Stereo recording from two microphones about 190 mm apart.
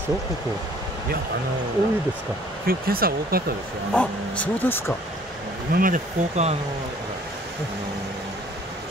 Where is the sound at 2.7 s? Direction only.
50° right (ahead or behind).